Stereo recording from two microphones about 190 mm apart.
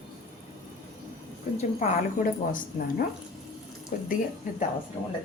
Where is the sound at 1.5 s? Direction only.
40° left (ahead or behind).